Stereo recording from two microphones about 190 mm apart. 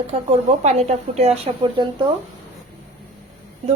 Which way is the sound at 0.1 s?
35° right (ahead or behind).